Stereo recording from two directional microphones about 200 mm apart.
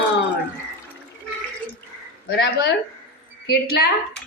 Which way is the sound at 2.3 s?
60° left (ahead or behind).